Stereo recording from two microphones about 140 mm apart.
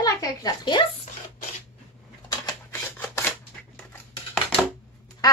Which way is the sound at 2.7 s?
10° left (ahead or behind).